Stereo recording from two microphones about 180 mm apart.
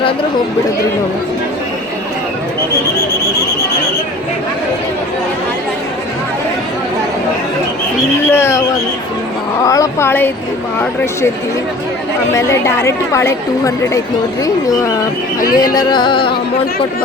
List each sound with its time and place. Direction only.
8.3 s a woman's voice: 15° left (ahead or behind)
9.6 s a woman's voice: 20° left (ahead or behind)
12.3 s a woman's voice: 15° left (ahead or behind)
14.4 s music: 20° left (ahead or behind)